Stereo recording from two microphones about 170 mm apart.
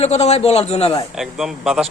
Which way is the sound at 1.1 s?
Centre (ahead or behind).